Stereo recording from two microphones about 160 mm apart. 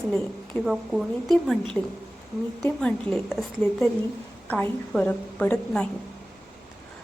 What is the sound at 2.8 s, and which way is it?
A woman's voice, 5° left (ahead or behind).